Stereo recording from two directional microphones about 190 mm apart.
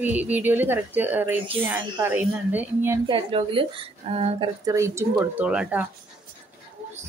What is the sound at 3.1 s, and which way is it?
A woman's voice, 25° right (ahead or behind).